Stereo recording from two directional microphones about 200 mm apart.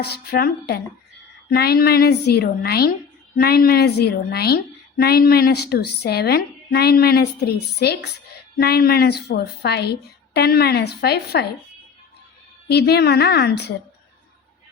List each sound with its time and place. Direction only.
0.0 s a woman's voice: 50° left (ahead or behind)
12.6 s a woman's voice: 55° left (ahead or behind)